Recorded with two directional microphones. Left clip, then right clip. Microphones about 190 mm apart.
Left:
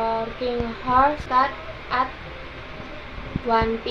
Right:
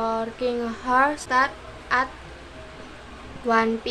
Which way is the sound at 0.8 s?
15° right (ahead or behind).